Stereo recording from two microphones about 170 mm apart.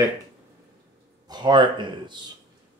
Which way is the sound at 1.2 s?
25° right (ahead or behind).